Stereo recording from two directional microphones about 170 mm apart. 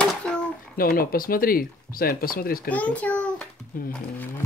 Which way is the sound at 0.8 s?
60° left (ahead or behind).